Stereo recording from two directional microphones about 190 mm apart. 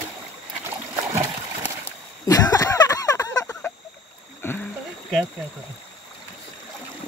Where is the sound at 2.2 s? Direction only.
20° left (ahead or behind).